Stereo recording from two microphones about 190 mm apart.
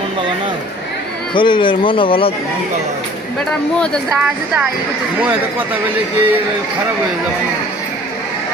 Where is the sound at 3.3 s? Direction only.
Centre (ahead or behind).